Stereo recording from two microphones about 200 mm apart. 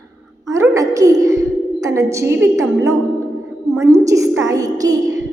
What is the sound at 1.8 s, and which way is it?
A woman's voice, 15° right (ahead or behind).